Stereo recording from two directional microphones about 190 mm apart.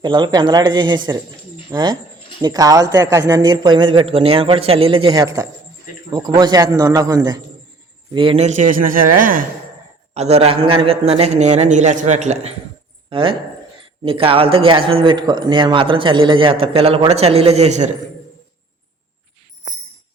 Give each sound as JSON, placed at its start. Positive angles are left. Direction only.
{"t": 0.0, "sound": "a man's voice", "side_deg": -25}
{"t": 10.2, "sound": "a man's voice", "side_deg": -35}